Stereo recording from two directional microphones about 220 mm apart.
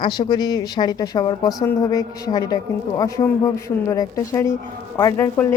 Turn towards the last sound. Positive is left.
turn(degrees=10)  # may be behind; listen again after turning